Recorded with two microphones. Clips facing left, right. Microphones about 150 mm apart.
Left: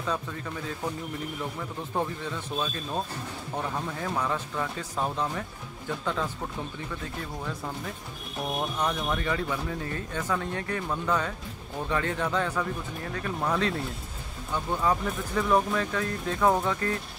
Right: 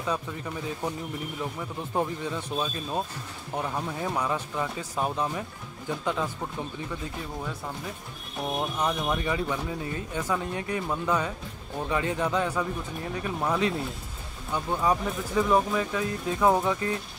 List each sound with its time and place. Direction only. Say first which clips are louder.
0.0 s speech: right 1 dB; 15° right (ahead or behind)
2.5 s speech: even; 20° right (ahead or behind)
8.4 s speech: right 1 dB; 5° right (ahead or behind)